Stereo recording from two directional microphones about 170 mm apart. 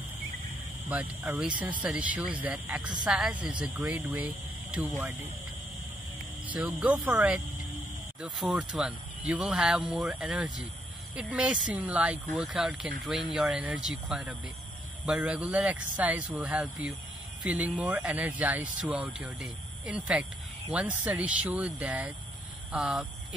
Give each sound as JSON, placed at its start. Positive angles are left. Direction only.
{"t": 0.8, "sound": "speech", "side_deg": -10}
{"t": 6.4, "sound": "speech", "side_deg": -10}